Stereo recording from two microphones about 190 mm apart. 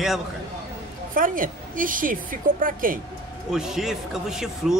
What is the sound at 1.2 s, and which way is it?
A woman's voice, 45° right (ahead or behind).